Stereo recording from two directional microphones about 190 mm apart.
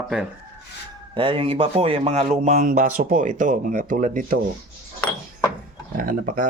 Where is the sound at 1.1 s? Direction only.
30° right (ahead or behind); by 4.3 s 45° right (ahead or behind).